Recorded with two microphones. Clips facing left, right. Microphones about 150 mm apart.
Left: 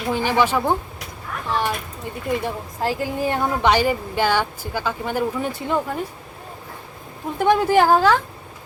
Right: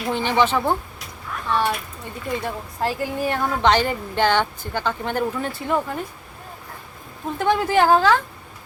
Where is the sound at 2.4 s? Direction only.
15° left (ahead or behind).